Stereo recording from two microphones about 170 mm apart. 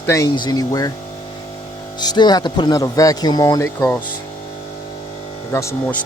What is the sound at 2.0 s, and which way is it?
Speech, 25° left (ahead or behind).